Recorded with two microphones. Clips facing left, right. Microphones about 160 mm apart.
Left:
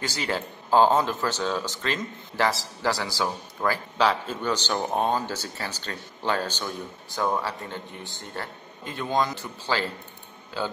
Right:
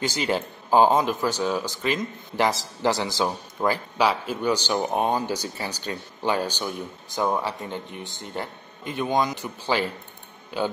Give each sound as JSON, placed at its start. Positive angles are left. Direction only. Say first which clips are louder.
{"t": 0.0, "sound": "speech", "louder": "right 4 dB", "side_deg": -20}